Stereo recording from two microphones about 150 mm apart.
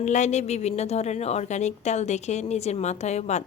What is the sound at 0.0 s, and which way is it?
A woman's voice, 50° left (ahead or behind).